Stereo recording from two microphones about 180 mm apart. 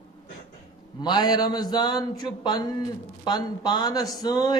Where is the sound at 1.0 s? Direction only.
25° left (ahead or behind).